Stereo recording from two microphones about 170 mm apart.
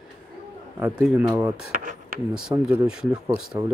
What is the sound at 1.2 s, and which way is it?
Speech, 20° right (ahead or behind).